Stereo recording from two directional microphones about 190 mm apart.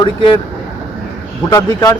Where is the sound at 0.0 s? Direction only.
25° left (ahead or behind).